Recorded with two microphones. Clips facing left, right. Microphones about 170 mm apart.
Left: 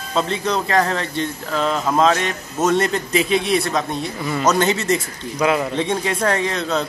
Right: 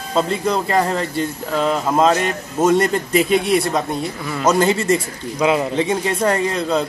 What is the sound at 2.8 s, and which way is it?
Speech, 25° left (ahead or behind).